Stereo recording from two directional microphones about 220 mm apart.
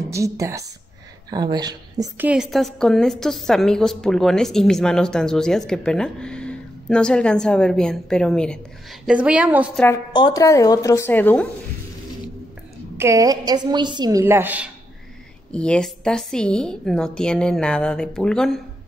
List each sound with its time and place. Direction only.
0.1 s a woman's voice: 15° right (ahead or behind)
10.1 s speech: 20° left (ahead or behind)
12.9 s a woman's voice: 15° right (ahead or behind)
15.5 s a woman's voice: 5° left (ahead or behind)